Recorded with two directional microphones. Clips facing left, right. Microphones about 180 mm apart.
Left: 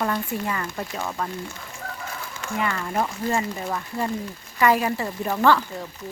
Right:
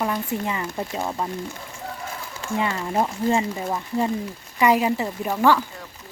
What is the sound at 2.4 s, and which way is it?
Speech, 25° right (ahead or behind).